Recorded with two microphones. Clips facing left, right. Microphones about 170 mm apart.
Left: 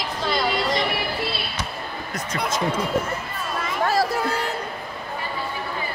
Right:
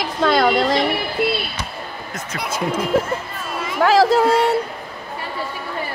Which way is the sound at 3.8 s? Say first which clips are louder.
Right 9 dB; 90° right.